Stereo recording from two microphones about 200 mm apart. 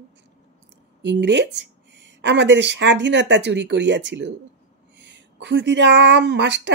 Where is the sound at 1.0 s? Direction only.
60° right (ahead or behind).